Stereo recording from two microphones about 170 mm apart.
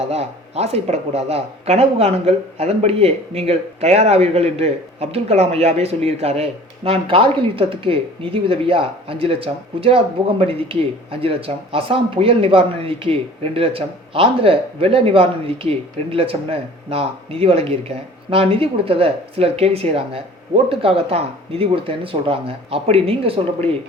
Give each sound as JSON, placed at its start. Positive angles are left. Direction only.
{"t": 0.1, "sound": "speech", "side_deg": -35}